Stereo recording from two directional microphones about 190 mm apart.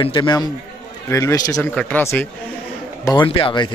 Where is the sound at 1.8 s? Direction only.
10° left (ahead or behind).